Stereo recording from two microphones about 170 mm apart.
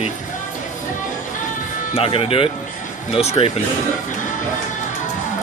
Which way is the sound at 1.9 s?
35° left (ahead or behind).